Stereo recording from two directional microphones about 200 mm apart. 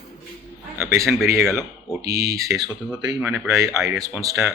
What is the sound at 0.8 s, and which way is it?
Speech, 15° right (ahead or behind).